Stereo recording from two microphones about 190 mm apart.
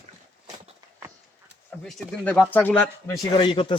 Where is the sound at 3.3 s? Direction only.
25° left (ahead or behind).